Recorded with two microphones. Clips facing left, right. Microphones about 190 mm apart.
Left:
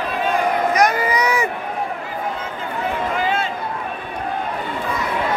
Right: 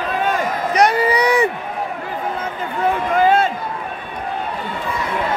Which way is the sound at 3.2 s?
50° right (ahead or behind).